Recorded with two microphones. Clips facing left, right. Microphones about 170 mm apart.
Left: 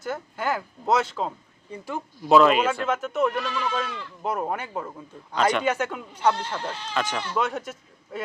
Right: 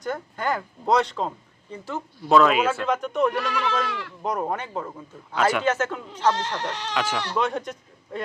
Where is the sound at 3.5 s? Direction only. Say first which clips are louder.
Right 2 dB; 80° right.